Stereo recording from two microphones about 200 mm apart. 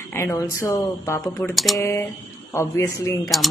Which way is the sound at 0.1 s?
15° left (ahead or behind).